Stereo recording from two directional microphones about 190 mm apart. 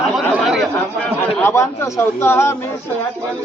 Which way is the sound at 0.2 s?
Centre (ahead or behind).